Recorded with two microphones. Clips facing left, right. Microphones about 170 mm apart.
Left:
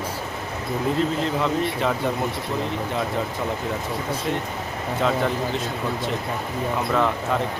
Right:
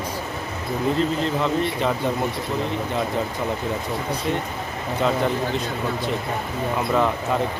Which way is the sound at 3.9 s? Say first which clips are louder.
Right 1 dB; centre (ahead or behind).